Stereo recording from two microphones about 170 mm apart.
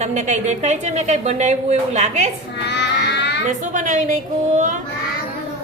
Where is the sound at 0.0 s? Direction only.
45° right (ahead or behind).